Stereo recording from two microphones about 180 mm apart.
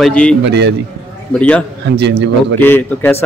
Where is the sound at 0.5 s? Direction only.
75° right (ahead or behind).